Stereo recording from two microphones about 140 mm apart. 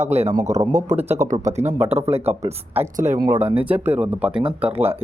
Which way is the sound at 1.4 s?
60° right (ahead or behind).